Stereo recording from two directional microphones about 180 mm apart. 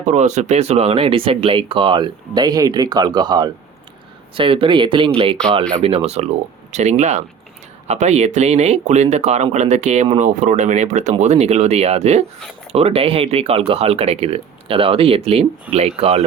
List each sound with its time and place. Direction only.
0.0 s speech: 40° right (ahead or behind)